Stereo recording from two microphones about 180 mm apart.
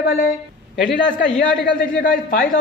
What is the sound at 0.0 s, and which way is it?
Speech, 55° left (ahead or behind).